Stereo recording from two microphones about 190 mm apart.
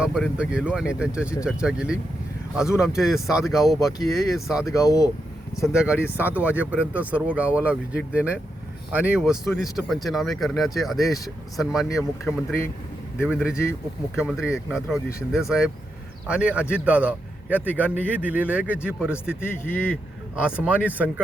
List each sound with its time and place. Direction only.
0.0 s speech: 5° right (ahead or behind)
4.7 s speech: 20° left (ahead or behind)
5.6 s speech: 5° right (ahead or behind)
12.2 s speech: 15° left (ahead or behind)
13.2 s a man's voice: 5° right (ahead or behind)
19.4 s speech: 10° left (ahead or behind)
20.3 s speech: 5° right (ahead or behind)